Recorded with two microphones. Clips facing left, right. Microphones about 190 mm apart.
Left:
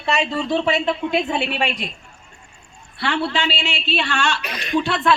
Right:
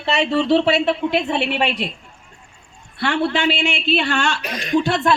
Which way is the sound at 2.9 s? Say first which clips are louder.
Right 3 dB; 50° right (ahead or behind).